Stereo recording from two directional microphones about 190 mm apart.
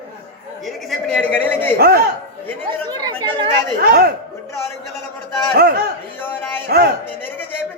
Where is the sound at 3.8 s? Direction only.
55° right (ahead or behind).